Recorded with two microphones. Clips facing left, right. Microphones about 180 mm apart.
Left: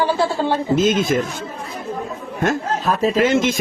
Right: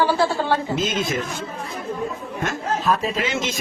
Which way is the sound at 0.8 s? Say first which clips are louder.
Left 7 dB; 50° left (ahead or behind).